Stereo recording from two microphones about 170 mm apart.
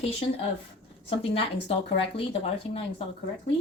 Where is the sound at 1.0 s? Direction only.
35° left (ahead or behind).